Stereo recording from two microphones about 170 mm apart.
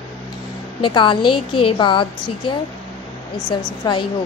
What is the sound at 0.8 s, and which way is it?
A woman's voice, 30° left (ahead or behind).